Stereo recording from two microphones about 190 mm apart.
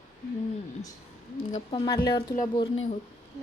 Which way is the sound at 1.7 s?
20° left (ahead or behind).